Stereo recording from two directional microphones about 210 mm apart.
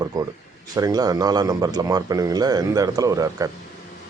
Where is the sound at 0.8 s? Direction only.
15° right (ahead or behind).